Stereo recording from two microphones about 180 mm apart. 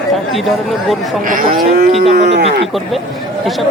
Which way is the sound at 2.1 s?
70° right (ahead or behind).